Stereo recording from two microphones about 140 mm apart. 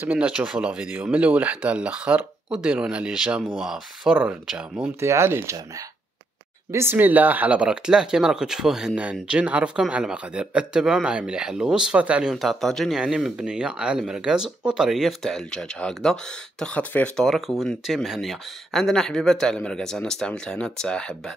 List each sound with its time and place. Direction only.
0.0 s speech: 10° right (ahead or behind)
5.0 s speech: 20° right (ahead or behind)
6.7 s speech: 15° right (ahead or behind); by 21.2 s 5° left (ahead or behind)